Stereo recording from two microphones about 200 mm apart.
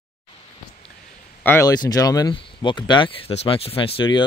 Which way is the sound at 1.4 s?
10° left (ahead or behind).